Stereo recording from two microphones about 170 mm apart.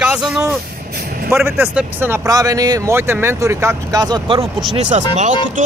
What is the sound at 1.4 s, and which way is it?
Speech, 10° right (ahead or behind).